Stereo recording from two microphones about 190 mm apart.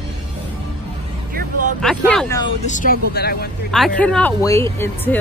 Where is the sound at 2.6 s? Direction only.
45° left (ahead or behind).